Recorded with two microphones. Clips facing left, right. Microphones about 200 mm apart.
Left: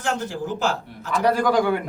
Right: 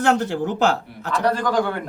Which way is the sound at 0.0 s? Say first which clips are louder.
Right 6 dB; 65° right (ahead or behind).